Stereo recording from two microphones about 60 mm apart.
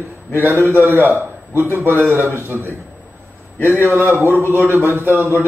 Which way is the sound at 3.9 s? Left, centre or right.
Right.